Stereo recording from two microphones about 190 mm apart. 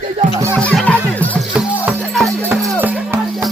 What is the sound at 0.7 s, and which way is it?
Speech, 5° left (ahead or behind).